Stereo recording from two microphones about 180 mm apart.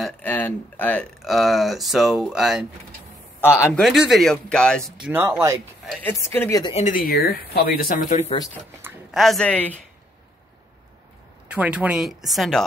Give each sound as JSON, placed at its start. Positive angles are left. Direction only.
{"t": 0.0, "sound": "speech", "side_deg": 10}
{"t": 3.3, "sound": "a man's voice", "side_deg": 15}
{"t": 3.7, "sound": "speech", "side_deg": 0}
{"t": 5.1, "sound": "speech", "side_deg": -10}
{"t": 6.0, "sound": "speech", "side_deg": 10}
{"t": 6.6, "sound": "speech", "side_deg": 40}
{"t": 9.1, "sound": "speech", "side_deg": 0}
{"t": 11.4, "sound": "speech", "side_deg": -5}